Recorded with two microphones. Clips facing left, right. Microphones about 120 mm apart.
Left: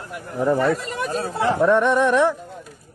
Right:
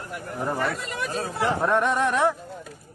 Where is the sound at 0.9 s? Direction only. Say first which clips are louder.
Left 5 dB; 40° left (ahead or behind).